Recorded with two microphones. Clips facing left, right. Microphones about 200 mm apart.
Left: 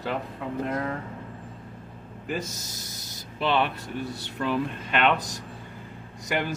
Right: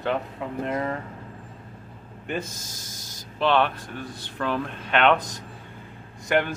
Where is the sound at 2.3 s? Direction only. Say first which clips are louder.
Right 1 dB; 50° right (ahead or behind).